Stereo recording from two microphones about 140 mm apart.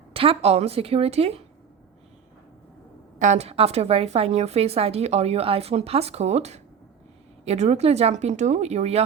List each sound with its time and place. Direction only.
0.1 s a woman's voice: 40° right (ahead or behind)
3.2 s a woman's voice: 55° right (ahead or behind)